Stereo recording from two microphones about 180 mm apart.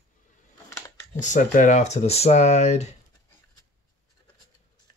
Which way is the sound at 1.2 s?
45° left (ahead or behind).